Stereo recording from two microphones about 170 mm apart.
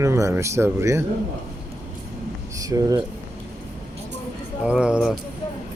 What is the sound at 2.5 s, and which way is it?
Speech, 20° right (ahead or behind).